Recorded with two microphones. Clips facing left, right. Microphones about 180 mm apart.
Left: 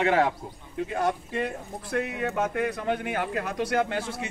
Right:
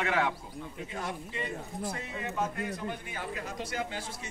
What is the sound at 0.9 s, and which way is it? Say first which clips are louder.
Speech: left 12 dB; 65° left (ahead or behind).